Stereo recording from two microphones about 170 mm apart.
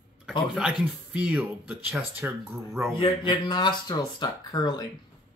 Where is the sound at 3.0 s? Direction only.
25° left (ahead or behind).